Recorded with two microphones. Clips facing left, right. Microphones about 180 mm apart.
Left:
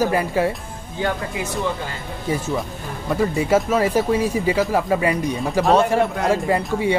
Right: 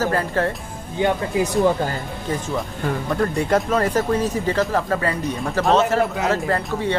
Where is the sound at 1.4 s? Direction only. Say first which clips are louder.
Right 9 dB; 40° right (ahead or behind).